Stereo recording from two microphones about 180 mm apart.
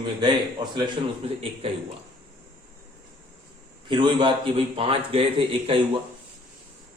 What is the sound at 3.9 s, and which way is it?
Speech, 25° right (ahead or behind).